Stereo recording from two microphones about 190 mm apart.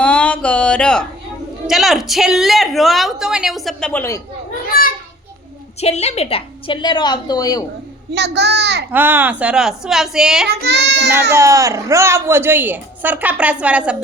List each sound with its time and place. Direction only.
0.0 s music: 5° left (ahead or behind)
1.6 s speech: centre (ahead or behind)
4.7 s children playing: 50° left (ahead or behind)
5.8 s a woman's voice: 35° left (ahead or behind)
8.1 s a child's voice: 65° right (ahead or behind)
8.9 s speech: 10° right (ahead or behind)
10.5 s a child's voice: 60° right (ahead or behind)
11.3 s a woman's voice: 15° right (ahead or behind)